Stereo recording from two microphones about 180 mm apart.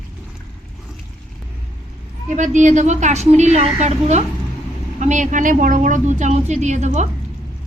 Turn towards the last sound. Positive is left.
turn(degrees=-40)  # may be behind; listen again after turning